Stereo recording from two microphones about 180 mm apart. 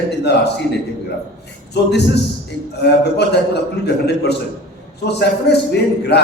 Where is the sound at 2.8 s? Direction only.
70° left (ahead or behind).